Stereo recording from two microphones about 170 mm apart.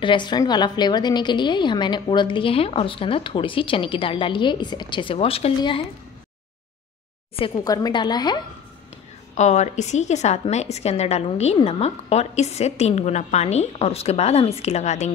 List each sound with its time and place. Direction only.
0.0 s a woman's voice: 25° left (ahead or behind)
7.3 s a woman's voice: 30° left (ahead or behind)
9.3 s a woman's voice: 45° left (ahead or behind)